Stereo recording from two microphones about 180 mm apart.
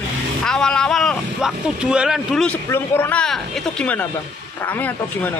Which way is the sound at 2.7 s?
10° left (ahead or behind).